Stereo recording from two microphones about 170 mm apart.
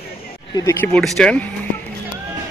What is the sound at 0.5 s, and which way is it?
Speech, 15° left (ahead or behind).